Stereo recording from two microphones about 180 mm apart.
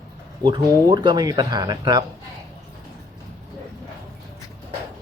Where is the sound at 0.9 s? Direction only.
25° right (ahead or behind).